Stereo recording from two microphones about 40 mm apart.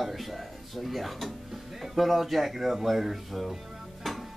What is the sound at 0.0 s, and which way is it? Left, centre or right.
Speech, centre.